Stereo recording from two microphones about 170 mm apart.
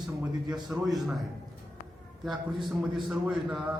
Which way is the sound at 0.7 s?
15° right (ahead or behind).